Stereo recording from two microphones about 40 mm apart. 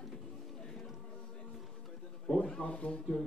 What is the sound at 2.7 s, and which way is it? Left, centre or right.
Speech, left.